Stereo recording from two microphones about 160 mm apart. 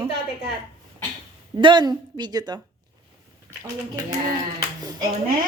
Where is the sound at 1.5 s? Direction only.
30° right (ahead or behind).